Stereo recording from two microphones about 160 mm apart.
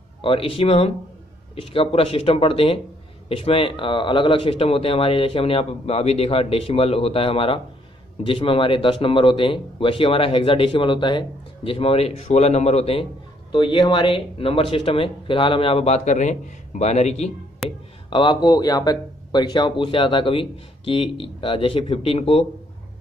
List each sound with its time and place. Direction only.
0.2 s speech: 35° left (ahead or behind)
17.6 s speech: 30° left (ahead or behind)